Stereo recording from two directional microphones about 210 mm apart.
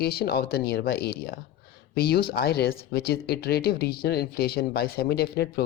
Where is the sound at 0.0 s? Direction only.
50° left (ahead or behind).